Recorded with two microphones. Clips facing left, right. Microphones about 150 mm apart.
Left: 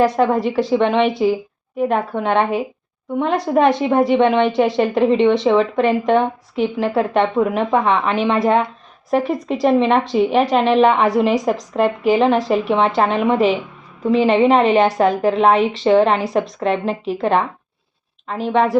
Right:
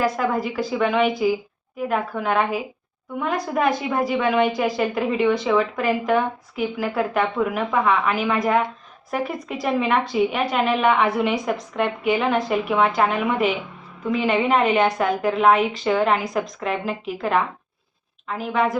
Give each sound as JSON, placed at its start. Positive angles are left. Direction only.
{"t": 0.2, "sound": "a woman's voice", "side_deg": 35}